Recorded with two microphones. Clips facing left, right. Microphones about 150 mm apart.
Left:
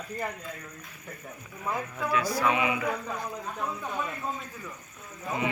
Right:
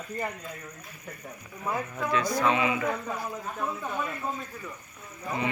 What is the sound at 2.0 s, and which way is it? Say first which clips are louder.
Speech: right 1 dB; 10° left (ahead or behind).